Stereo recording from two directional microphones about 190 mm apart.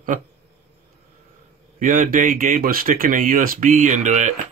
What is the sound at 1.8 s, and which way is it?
Speech, 45° right (ahead or behind).